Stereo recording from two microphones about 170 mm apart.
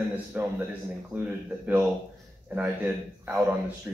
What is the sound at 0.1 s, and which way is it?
A man's voice, 10° right (ahead or behind).